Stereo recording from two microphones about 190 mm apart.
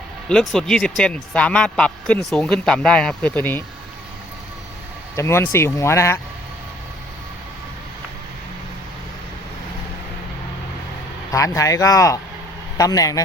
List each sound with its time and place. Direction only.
0.5 s speech: centre (ahead or behind)
5.1 s speech: 15° left (ahead or behind)
11.3 s speech: 15° left (ahead or behind)